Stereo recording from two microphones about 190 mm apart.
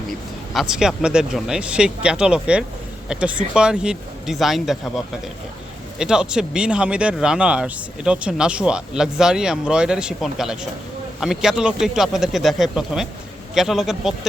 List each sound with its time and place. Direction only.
0.5 s speech: 5° right (ahead or behind)